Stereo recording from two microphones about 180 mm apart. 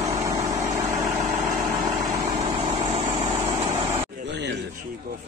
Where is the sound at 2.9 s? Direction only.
35° right (ahead or behind).